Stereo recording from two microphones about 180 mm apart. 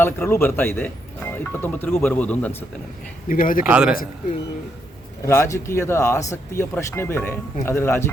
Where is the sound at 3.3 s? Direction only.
50° left (ahead or behind).